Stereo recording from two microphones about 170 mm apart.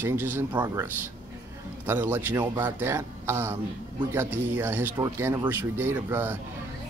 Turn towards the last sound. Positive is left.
turn(degrees=-10)  # may be behind; listen again after turning